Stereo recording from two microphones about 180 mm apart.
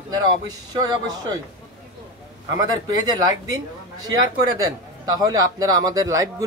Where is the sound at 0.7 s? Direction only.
20° right (ahead or behind).